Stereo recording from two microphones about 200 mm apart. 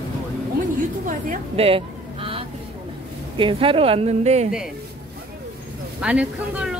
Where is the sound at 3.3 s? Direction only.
25° right (ahead or behind).